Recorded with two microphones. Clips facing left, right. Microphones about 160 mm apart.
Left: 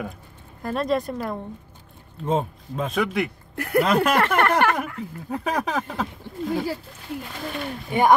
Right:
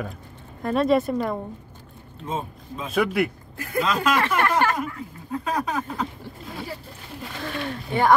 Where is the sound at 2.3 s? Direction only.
60° left (ahead or behind).